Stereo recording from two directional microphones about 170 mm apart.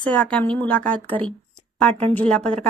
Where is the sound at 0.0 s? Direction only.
5° left (ahead or behind).